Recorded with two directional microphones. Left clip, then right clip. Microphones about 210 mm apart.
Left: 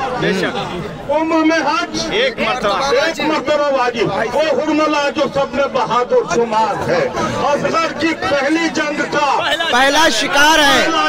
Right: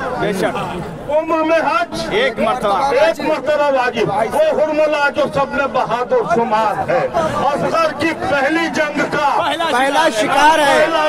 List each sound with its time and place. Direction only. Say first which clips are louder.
2.1 s speech: right 1 dB; 60° right (ahead or behind)
9.8 s a man's voice: left 3 dB; 5° left (ahead or behind)